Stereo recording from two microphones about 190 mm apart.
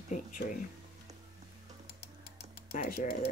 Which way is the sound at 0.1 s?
40° left (ahead or behind).